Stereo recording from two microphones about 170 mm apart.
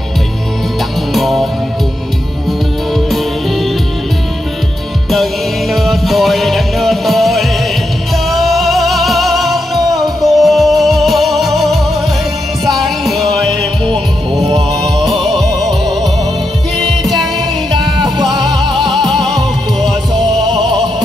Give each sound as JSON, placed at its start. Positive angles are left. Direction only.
{"t": 1.1, "sound": "music", "side_deg": 0}
{"t": 5.1, "sound": "music", "side_deg": 0}
{"t": 15.0, "sound": "music", "side_deg": 0}
{"t": 18.2, "sound": "music", "side_deg": 0}
{"t": 20.2, "sound": "music", "side_deg": -25}